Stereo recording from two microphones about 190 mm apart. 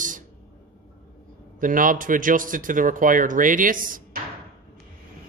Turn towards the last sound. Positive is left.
turn(degrees=-45)  # may be behind; listen again after turning